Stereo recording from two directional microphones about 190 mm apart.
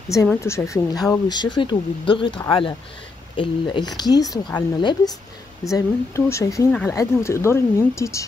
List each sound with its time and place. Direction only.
0.3 s speech: 15° left (ahead or behind)
6.7 s speech: 5° left (ahead or behind)